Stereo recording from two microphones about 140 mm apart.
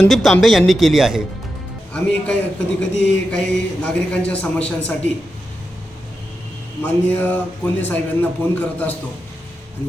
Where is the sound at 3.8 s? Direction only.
10° left (ahead or behind).